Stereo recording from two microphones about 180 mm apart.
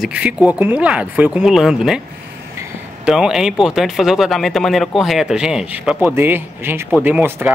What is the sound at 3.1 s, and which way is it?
Speech, 5° right (ahead or behind).